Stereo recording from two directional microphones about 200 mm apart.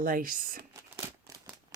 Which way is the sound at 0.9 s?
15° right (ahead or behind).